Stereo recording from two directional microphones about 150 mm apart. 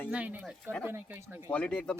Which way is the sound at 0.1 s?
10° right (ahead or behind).